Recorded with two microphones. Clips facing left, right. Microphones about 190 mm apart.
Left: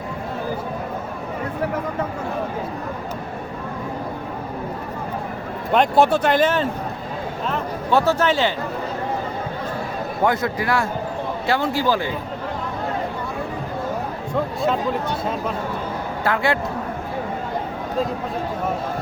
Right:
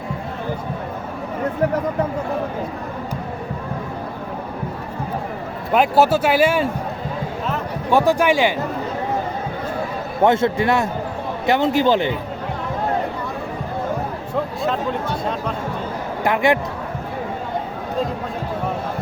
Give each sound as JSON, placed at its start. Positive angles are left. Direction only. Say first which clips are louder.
{"t": 5.7, "sound": "speech", "louder": "right 1 dB", "side_deg": -5}
{"t": 7.9, "sound": "speech", "louder": "right 2 dB", "side_deg": -15}
{"t": 10.2, "sound": "speech", "louder": "right 5 dB", "side_deg": -25}
{"t": 16.2, "sound": "speech", "louder": "right 4 dB", "side_deg": -20}